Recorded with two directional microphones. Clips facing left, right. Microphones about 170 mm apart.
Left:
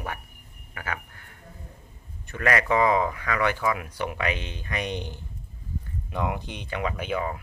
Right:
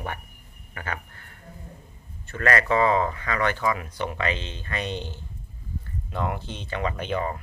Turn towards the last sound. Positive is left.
turn(degrees=5)  # may be behind; listen again after turning